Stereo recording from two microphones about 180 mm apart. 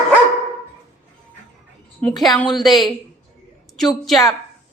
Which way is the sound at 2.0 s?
5° left (ahead or behind).